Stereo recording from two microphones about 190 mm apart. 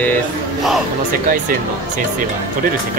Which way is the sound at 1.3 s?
45° right (ahead or behind).